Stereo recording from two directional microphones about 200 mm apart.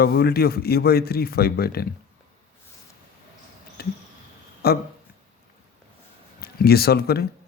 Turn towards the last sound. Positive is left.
turn(degrees=50)  # may be behind; listen again after turning